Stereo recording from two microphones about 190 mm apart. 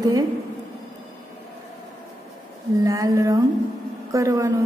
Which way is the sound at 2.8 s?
15° right (ahead or behind).